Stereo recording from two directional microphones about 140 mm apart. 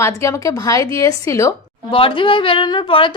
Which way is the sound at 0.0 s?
20° left (ahead or behind).